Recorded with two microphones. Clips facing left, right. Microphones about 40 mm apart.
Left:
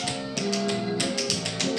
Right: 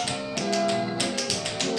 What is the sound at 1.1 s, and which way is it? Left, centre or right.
Music, centre.